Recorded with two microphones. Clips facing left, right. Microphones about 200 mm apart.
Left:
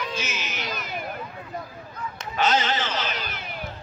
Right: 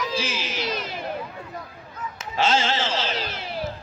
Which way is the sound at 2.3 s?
25° right (ahead or behind).